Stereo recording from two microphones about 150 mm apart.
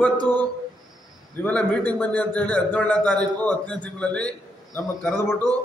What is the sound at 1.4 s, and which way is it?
A man's voice, 10° left (ahead or behind).